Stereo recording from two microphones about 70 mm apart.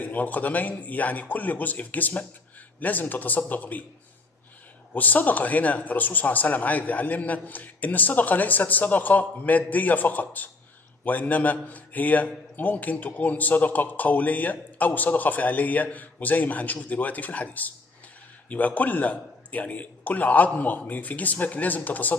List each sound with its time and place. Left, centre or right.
0.0 s a man's voice: left
4.9 s a man's voice: left